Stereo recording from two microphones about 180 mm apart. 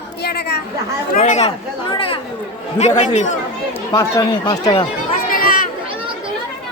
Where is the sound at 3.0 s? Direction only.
40° left (ahead or behind).